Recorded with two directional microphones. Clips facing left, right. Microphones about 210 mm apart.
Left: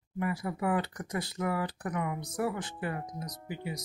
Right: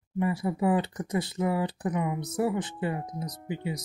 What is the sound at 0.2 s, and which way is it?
Speech, 25° right (ahead or behind).